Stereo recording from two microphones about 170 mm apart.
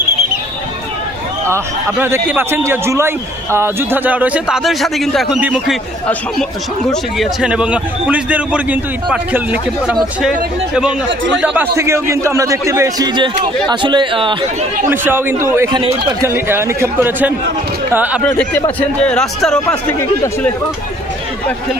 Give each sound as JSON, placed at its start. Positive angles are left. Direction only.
{"t": 1.4, "sound": "speech", "side_deg": -15}
{"t": 6.9, "sound": "a man's voice", "side_deg": 0}
{"t": 14.9, "sound": "speech", "side_deg": -10}
{"t": 18.8, "sound": "speech", "side_deg": 5}